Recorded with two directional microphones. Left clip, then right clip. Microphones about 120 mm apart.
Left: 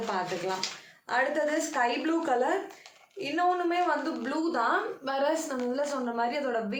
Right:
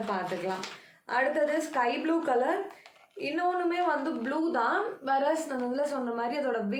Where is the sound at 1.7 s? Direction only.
25° left (ahead or behind).